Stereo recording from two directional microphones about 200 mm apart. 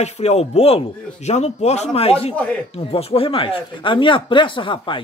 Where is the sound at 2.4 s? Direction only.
5° left (ahead or behind).